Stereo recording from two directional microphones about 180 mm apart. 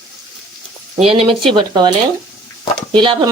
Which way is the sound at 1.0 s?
30° right (ahead or behind).